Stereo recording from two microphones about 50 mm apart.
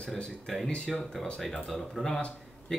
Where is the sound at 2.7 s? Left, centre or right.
Centre.